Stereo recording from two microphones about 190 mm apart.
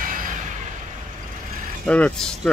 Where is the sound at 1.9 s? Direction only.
5° left (ahead or behind).